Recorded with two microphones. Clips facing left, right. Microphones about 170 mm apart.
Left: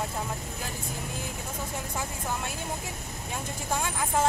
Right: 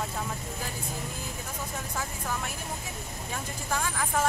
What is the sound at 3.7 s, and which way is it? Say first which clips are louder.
Speech: left 1 dB; 20° left (ahead or behind).